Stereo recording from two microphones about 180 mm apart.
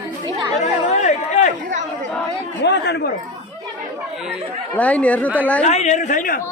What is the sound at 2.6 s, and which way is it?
Speech, 70° left (ahead or behind).